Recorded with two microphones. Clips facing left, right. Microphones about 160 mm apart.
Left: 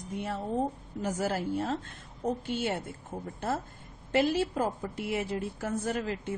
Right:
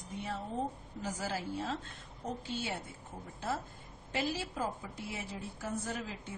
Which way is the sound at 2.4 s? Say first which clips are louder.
Left 7 dB; 65° left (ahead or behind).